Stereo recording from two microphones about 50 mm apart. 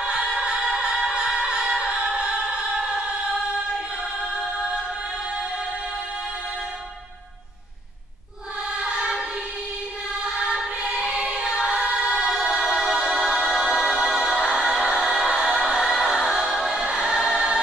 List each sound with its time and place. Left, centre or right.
0.4 s music: centre
8.8 s choir: centre
10.9 s choir: right
13.5 s music: centre
15.0 s choir: centre